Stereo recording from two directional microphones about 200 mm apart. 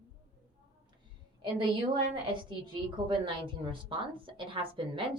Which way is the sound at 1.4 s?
25° right (ahead or behind).